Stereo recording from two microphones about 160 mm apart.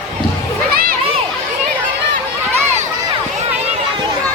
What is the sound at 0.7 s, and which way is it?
Crowd, 65° right (ahead or behind).